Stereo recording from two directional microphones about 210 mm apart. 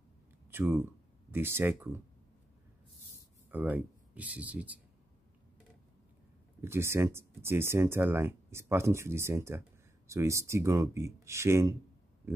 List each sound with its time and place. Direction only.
0.5 s speech: 10° right (ahead or behind)
3.4 s speech: 10° right (ahead or behind)
6.6 s speech: 10° right (ahead or behind)